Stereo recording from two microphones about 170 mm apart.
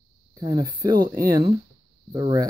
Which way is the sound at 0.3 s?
25° right (ahead or behind).